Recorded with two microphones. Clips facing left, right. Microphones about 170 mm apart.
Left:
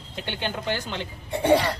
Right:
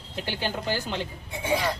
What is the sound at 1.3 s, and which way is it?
Speech, 70° left (ahead or behind).